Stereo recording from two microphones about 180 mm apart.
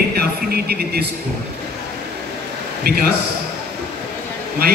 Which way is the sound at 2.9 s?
55° right (ahead or behind).